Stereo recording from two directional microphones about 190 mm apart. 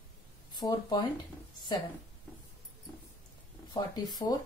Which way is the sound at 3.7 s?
20° left (ahead or behind).